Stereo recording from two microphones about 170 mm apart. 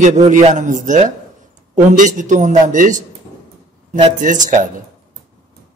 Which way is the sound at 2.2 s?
45° right (ahead or behind).